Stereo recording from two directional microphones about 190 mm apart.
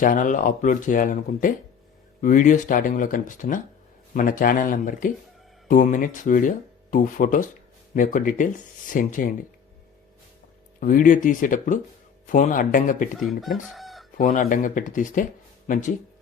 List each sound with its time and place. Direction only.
0.0 s speech: 45° left (ahead or behind)
10.8 s speech: 45° left (ahead or behind)
13.1 s speech: centre (ahead or behind)
14.2 s speech: 45° left (ahead or behind)